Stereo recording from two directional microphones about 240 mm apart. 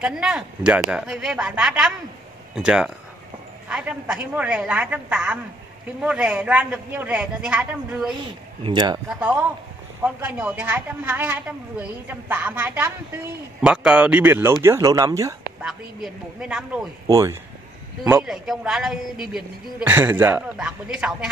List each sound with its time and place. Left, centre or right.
0.0 s a man's voice: centre
8.6 s speech: centre
9.2 s a man's voice: centre
15.6 s a man's voice: centre